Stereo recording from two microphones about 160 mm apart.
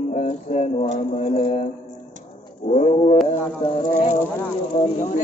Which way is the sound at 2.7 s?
40° left (ahead or behind).